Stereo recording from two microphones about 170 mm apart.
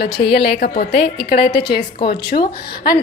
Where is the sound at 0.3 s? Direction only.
70° left (ahead or behind).